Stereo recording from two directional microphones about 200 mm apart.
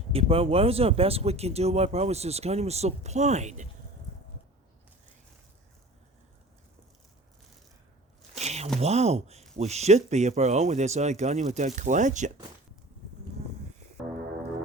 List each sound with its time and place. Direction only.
0.1 s speech: 30° right (ahead or behind)
8.4 s a sound: 35° right (ahead or behind)
8.8 s speech: 30° right (ahead or behind)